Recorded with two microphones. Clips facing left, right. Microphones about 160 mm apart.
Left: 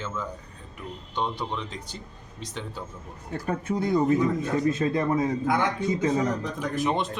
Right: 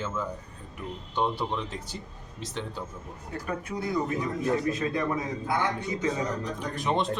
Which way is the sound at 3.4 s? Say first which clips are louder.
Left 6 dB; 25° left (ahead or behind).